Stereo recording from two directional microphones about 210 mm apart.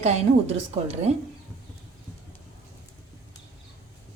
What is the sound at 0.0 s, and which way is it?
Speech, 30° right (ahead or behind).